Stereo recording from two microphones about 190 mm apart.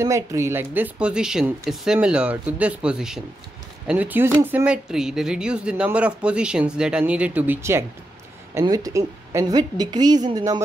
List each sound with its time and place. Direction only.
0.0 s speech: 15° right (ahead or behind)